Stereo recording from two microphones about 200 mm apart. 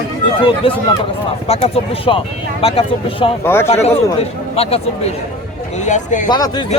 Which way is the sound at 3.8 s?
30° left (ahead or behind).